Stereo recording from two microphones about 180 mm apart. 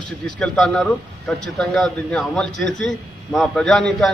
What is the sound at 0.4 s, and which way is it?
A man's voice, 5° left (ahead or behind).